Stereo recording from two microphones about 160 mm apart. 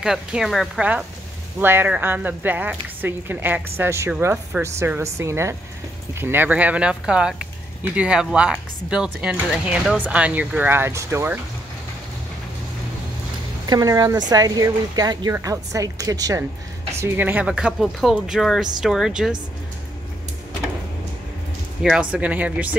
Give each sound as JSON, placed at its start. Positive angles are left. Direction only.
{"t": 0.0, "sound": "speech", "side_deg": -5}
{"t": 13.7, "sound": "a woman's voice", "side_deg": -25}
{"t": 21.8, "sound": "speech", "side_deg": -5}